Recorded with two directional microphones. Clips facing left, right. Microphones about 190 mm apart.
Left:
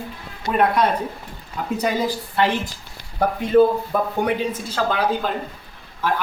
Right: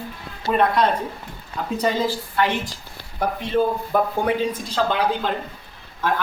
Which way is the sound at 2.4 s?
25° left (ahead or behind).